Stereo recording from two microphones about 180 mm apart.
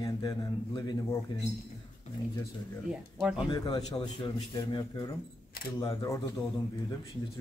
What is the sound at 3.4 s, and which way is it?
Speech, 25° left (ahead or behind).